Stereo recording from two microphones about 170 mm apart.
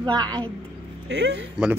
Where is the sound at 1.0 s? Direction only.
90° right.